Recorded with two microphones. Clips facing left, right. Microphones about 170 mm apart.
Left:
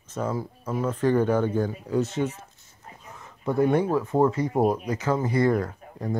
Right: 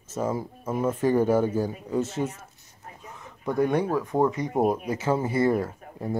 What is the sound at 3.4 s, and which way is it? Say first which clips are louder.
Speech: left 2 dB; 20° left (ahead or behind).